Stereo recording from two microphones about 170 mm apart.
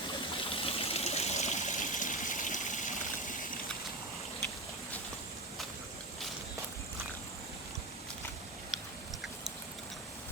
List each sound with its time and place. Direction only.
0.5 s stream: 35° left (ahead or behind)